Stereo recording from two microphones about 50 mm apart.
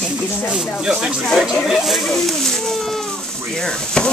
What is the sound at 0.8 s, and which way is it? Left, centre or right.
Speech, centre.